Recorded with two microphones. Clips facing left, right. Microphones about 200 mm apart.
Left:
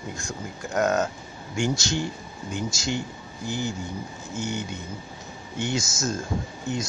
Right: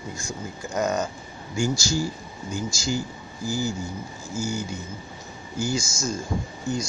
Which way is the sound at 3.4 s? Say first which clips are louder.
Right 2 dB; 35° right (ahead or behind).